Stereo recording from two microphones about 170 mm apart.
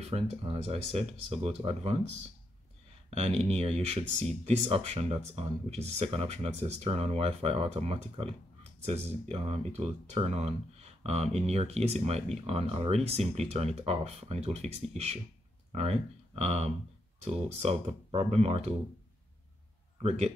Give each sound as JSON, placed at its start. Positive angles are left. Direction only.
{"t": 0.1, "sound": "speech", "side_deg": -35}
{"t": 3.2, "sound": "speech", "side_deg": -35}
{"t": 20.0, "sound": "speech", "side_deg": -35}